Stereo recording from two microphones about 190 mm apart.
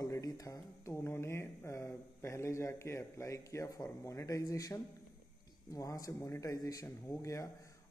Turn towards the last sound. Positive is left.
turn(degrees=15)  # may be behind; listen again after turning